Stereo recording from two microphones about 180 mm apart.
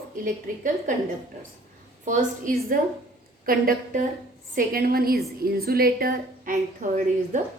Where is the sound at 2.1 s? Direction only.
50° right (ahead or behind).